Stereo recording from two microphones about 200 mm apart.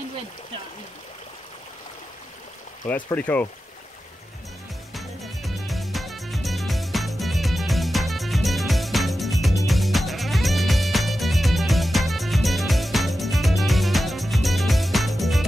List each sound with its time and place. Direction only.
2.8 s speech: 15° left (ahead or behind)
3.2 s speech: 5° left (ahead or behind)
4.9 s music: centre (ahead or behind)